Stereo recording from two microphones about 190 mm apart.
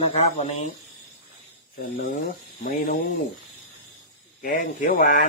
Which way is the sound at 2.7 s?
50° left (ahead or behind).